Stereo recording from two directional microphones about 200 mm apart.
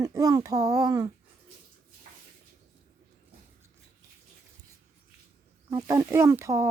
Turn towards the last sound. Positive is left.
turn(degrees=-15)  # may be behind; listen again after turning